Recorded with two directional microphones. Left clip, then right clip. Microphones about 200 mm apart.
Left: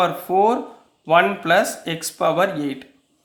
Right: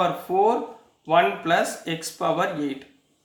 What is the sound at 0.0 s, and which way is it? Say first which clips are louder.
Speech: left 3 dB; 40° left (ahead or behind).